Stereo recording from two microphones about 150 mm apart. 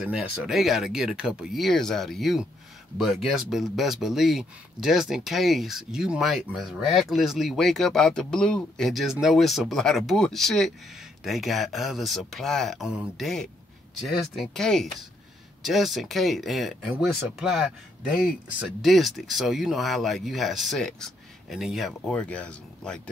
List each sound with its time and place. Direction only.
0.0 s speech: 5° right (ahead or behind)